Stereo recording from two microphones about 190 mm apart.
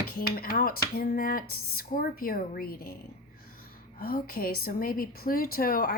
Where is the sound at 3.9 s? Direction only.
50° left (ahead or behind).